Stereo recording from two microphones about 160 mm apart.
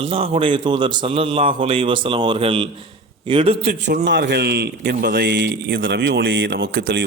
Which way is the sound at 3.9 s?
90° right.